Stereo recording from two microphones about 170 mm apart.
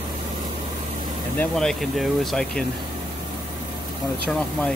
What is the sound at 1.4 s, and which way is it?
Speech, 5° left (ahead or behind).